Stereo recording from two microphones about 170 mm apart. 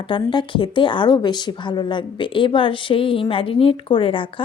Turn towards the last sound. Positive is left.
turn(degrees=30)  # may be behind; listen again after turning